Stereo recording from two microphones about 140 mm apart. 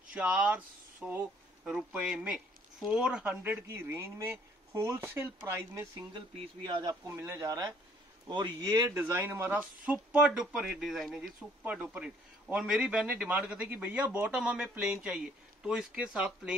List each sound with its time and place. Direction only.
0.1 s speech: 10° right (ahead or behind)
6.1 s a man's voice: 35° right (ahead or behind)
7.1 s speech: 20° right (ahead or behind)